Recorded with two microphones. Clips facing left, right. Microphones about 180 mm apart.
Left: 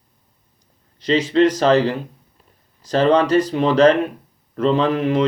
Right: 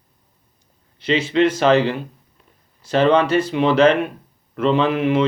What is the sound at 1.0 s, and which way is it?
Speech, 35° left (ahead or behind).